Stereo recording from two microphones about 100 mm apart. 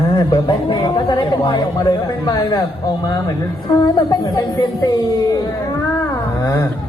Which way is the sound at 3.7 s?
35° left (ahead or behind).